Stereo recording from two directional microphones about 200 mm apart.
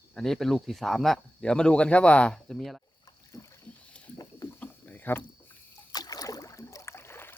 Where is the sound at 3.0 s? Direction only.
15° left (ahead or behind).